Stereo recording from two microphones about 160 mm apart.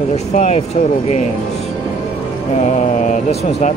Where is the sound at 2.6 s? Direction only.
45° left (ahead or behind).